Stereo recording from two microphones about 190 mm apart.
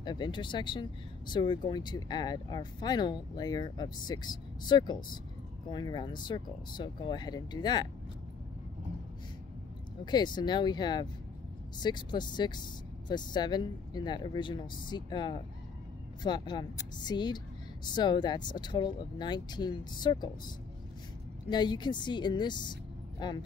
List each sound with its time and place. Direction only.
0.0 s speech: 25° left (ahead or behind)
10.1 s a woman's voice: 20° left (ahead or behind)